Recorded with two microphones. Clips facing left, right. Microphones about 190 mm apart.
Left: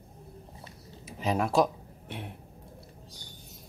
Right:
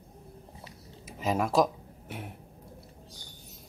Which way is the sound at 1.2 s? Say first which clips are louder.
Even; centre (ahead or behind).